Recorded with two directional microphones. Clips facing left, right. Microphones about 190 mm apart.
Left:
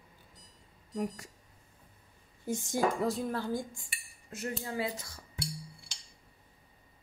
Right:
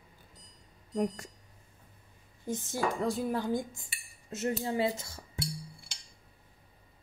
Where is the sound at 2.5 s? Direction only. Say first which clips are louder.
Left 2 dB; 15° left (ahead or behind).